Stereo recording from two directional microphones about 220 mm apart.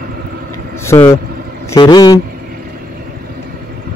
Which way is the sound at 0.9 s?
10° left (ahead or behind).